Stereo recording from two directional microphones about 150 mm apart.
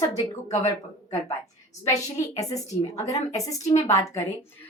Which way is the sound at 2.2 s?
25° left (ahead or behind).